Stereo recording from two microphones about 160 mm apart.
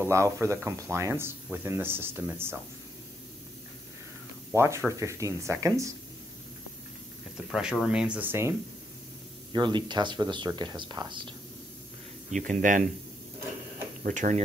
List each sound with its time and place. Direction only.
0.1 s speech: 20° right (ahead or behind)
4.6 s speech: 15° right (ahead or behind)
7.5 s speech: 5° right (ahead or behind)
9.5 s speech: 30° right (ahead or behind)
12.3 s speech: 50° right (ahead or behind)
14.0 s speech: 50° right (ahead or behind)